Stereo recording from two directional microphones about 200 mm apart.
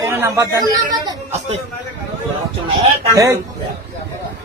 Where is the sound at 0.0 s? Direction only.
15° right (ahead or behind).